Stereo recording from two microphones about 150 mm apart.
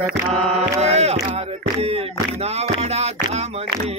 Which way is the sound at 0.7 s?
45° right (ahead or behind).